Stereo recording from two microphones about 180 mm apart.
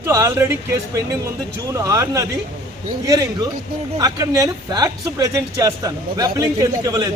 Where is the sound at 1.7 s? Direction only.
20° right (ahead or behind).